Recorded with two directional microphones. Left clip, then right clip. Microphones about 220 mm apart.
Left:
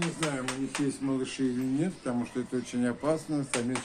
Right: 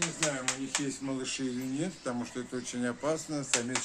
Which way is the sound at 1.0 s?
10° right (ahead or behind).